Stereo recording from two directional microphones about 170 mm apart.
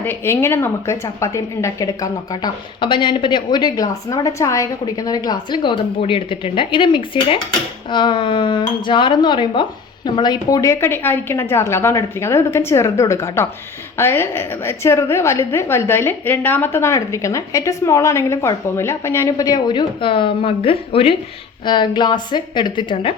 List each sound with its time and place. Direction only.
0.0 s a woman's voice: 15° left (ahead or behind); by 23.1 s 30° left (ahead or behind)